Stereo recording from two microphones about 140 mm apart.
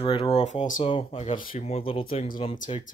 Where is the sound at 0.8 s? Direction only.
40° left (ahead or behind).